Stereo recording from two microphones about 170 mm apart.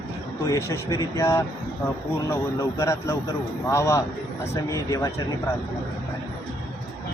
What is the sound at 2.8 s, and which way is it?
Speech, 15° left (ahead or behind).